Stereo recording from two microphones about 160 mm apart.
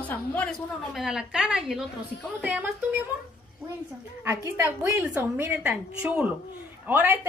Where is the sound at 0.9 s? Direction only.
5° right (ahead or behind).